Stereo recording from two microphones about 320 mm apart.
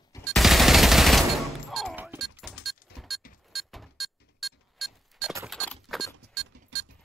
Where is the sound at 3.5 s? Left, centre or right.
Centre.